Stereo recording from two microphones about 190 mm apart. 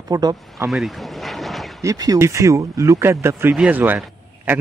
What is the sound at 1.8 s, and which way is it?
Speech, 20° right (ahead or behind).